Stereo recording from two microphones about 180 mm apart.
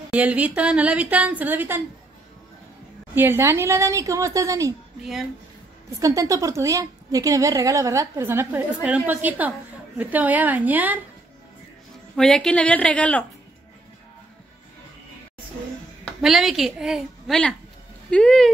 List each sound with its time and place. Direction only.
0.1 s a woman's voice: 10° right (ahead or behind)
3.2 s a woman's voice: 15° right (ahead or behind)
5.9 s a woman's voice: 20° right (ahead or behind)
12.2 s a woman's voice: 5° left (ahead or behind)
16.2 s a woman's voice: centre (ahead or behind)